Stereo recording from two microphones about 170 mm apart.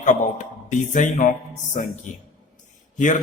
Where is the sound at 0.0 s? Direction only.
50° left (ahead or behind).